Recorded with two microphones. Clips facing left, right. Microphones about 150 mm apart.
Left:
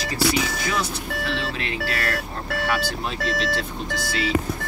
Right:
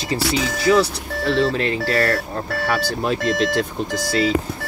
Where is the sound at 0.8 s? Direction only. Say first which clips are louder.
Right 6 dB; 35° right (ahead or behind).